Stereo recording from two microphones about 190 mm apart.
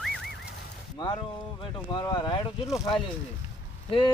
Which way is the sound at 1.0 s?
20° left (ahead or behind).